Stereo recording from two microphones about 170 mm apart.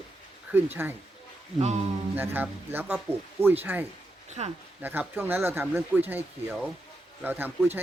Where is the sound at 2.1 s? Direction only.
10° right (ahead or behind).